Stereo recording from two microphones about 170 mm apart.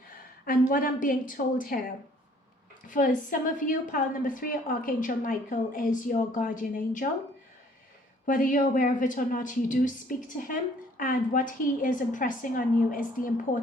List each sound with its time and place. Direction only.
0.7 s speech: 55° left (ahead or behind)
2.8 s speech: 50° left (ahead or behind)
8.3 s speech: 50° left (ahead or behind)